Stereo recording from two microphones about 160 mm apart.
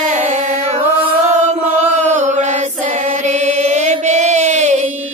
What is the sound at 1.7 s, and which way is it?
Chant, 45° right (ahead or behind).